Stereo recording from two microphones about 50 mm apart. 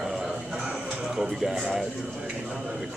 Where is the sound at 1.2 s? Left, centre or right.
Centre.